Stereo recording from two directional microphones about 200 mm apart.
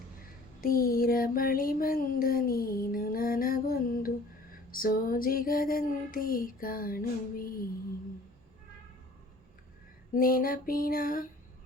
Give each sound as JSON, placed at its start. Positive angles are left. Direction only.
{"t": 0.6, "sound": "a sound", "side_deg": 45}
{"t": 4.7, "sound": "female singing", "side_deg": 45}
{"t": 10.2, "sound": "female singing", "side_deg": 45}